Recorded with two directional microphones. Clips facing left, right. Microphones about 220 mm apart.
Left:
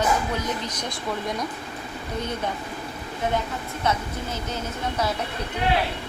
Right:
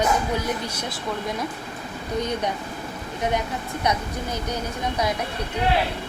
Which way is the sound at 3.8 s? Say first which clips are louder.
Even; 15° right (ahead or behind).